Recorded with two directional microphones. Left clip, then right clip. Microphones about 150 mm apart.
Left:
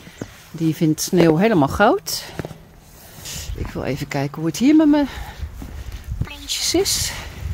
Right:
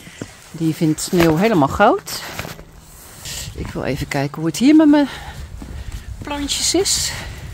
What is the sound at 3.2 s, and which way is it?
Speech, 15° right (ahead or behind).